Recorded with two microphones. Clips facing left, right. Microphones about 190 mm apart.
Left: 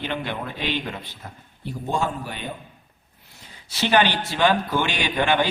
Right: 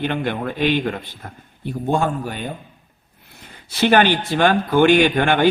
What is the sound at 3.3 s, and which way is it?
A man's voice, 55° right (ahead or behind).